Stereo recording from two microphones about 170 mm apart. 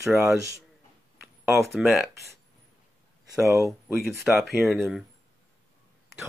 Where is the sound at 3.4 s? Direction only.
15° right (ahead or behind).